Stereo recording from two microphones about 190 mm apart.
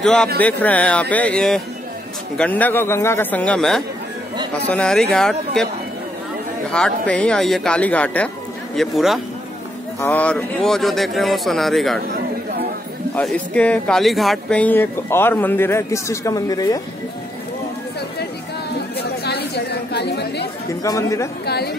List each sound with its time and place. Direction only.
0.0 s speech: 5° left (ahead or behind)
6.7 s speech: 5° left (ahead or behind)
9.9 s speech: 10° left (ahead or behind)
13.1 s speech: 5° left (ahead or behind)
18.9 s chatter: 60° left (ahead or behind)
20.8 s speech: 15° left (ahead or behind)